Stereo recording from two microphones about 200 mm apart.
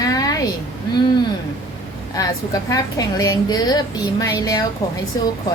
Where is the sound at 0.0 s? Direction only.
20° left (ahead or behind).